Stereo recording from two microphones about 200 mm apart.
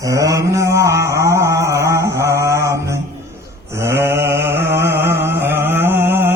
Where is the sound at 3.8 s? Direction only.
15° right (ahead or behind).